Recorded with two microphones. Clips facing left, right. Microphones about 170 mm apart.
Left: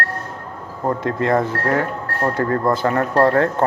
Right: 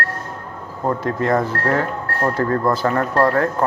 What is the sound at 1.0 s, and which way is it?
Speech, 20° left (ahead or behind).